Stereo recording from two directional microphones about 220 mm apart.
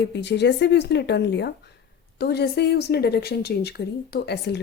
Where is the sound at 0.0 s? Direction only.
50° left (ahead or behind).